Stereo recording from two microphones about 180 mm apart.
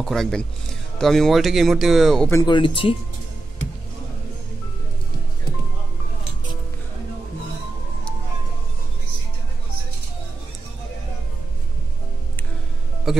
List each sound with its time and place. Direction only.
0.0 s speech: centre (ahead or behind)
2.4 s speech: 25° left (ahead or behind)
13.1 s speech: centre (ahead or behind)